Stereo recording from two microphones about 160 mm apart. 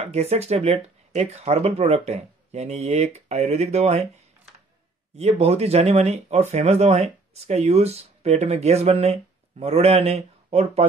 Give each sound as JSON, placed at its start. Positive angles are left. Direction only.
{"t": 0.0, "sound": "speech", "side_deg": -40}
{"t": 5.1, "sound": "speech", "side_deg": -40}